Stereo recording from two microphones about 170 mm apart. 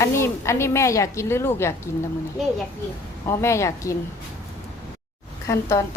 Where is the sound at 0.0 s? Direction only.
15° left (ahead or behind).